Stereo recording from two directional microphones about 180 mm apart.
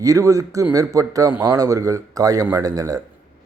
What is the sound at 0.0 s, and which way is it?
A man's voice, 20° right (ahead or behind).